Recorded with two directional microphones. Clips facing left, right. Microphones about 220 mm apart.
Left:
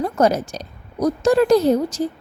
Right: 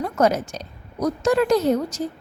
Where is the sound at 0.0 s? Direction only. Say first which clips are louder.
Left 2 dB; 35° left (ahead or behind).